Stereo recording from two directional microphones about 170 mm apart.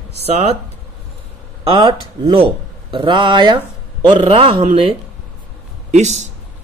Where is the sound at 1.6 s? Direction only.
25° right (ahead or behind).